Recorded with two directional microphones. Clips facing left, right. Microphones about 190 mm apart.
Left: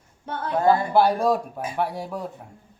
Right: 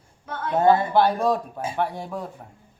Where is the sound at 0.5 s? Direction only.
25° right (ahead or behind).